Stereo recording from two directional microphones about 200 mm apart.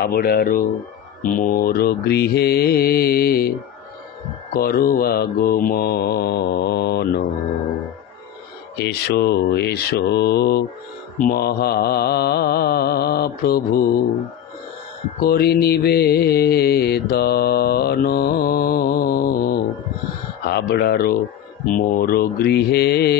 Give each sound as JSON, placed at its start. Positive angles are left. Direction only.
{"t": 0.0, "sound": "mantra", "side_deg": 50}
{"t": 4.6, "sound": "mantra", "side_deg": 45}
{"t": 8.7, "sound": "mantra", "side_deg": 55}
{"t": 15.2, "sound": "mantra", "side_deg": 50}